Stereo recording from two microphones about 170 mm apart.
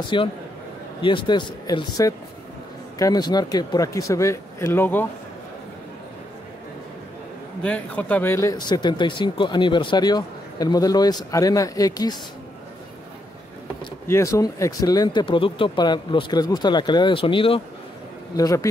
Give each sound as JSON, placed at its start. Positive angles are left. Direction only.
{"t": 0.1, "sound": "speech", "side_deg": 30}
{"t": 7.6, "sound": "speech", "side_deg": 10}
{"t": 14.0, "sound": "speech", "side_deg": 15}
{"t": 18.3, "sound": "speech", "side_deg": 20}